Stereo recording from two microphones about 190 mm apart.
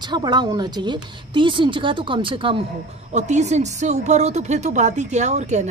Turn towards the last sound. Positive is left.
turn(degrees=-35)  # may be behind; listen again after turning